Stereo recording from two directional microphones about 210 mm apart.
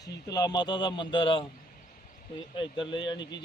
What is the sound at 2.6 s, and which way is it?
Speech, 25° left (ahead or behind).